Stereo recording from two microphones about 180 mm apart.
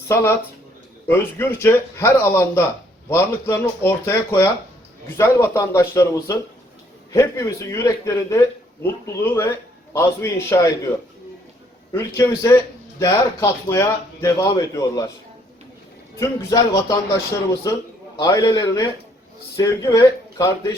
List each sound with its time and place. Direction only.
0.1 s speech: 15° left (ahead or behind)
11.9 s speech: 15° left (ahead or behind)
16.1 s a man's voice: 15° left (ahead or behind)